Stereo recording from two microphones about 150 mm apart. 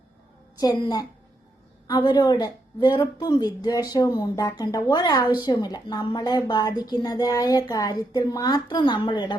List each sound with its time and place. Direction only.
0.6 s speech: 25° left (ahead or behind)